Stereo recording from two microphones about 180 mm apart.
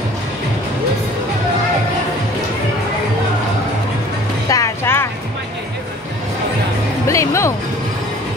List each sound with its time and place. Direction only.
4.5 s vehicle: 20° left (ahead or behind)
7.1 s music: 15° left (ahead or behind)